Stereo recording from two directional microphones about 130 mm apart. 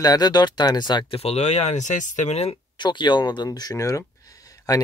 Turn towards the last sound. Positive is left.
turn(degrees=25)  # may be behind; listen again after turning